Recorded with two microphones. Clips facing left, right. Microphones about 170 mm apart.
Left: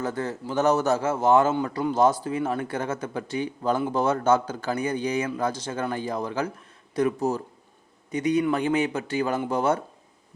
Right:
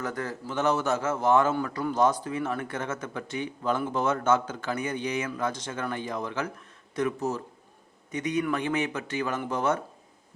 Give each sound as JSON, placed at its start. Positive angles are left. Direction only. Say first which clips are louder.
{"t": 0.0, "sound": "speech", "louder": "left 4 dB", "side_deg": 30}